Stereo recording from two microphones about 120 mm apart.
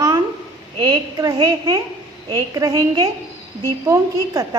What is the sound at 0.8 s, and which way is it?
A woman's voice, 35° right (ahead or behind).